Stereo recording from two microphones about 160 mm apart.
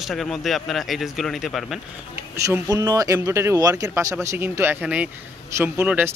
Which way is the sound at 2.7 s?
20° right (ahead or behind).